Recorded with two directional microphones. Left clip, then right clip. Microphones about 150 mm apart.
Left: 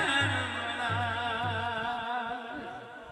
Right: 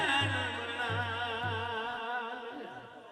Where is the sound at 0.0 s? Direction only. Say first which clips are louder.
Left 2 dB; 15° right (ahead or behind).